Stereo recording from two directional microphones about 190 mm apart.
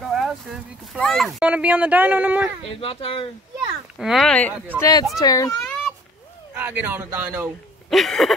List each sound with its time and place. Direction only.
0.0 s speech: centre (ahead or behind)
2.7 s speech: 30° left (ahead or behind)
4.0 s speech: centre (ahead or behind)
4.7 s speech: 20° left (ahead or behind)
5.6 s a sound: centre (ahead or behind)
6.5 s speech: 10° right (ahead or behind)
7.9 s speech: centre (ahead or behind)